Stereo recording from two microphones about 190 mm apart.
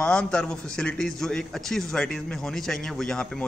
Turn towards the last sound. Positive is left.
turn(degrees=5)  # may be behind; listen again after turning